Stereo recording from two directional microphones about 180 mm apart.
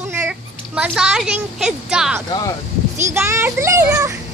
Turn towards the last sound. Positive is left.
turn(degrees=-15)  # may be behind; listen again after turning